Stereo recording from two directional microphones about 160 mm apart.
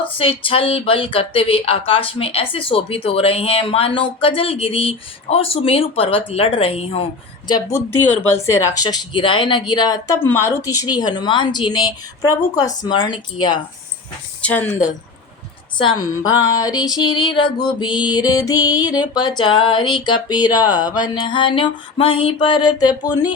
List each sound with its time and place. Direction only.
0.0 s speech: 35° left (ahead or behind)
7.9 s speech: 15° left (ahead or behind)
14.4 s speech: 10° left (ahead or behind)
15.8 s speech: 25° left (ahead or behind)